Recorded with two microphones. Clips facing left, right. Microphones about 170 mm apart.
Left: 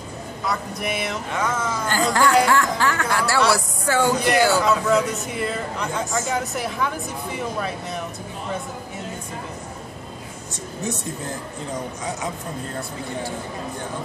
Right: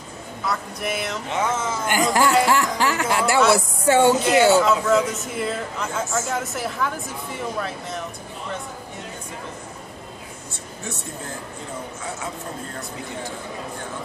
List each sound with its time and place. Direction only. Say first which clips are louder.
0.5 s speech: even; centre (ahead or behind)
1.3 s speech: right 2 dB; 25° right (ahead or behind)
4.6 s speech: even; centre (ahead or behind)